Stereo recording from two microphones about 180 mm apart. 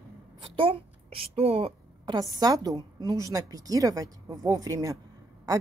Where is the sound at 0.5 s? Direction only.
30° right (ahead or behind).